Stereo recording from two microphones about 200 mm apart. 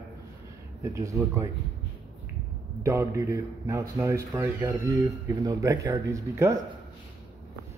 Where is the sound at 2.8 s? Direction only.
15° right (ahead or behind).